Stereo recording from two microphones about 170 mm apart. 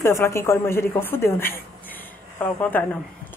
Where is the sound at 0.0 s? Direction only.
15° left (ahead or behind).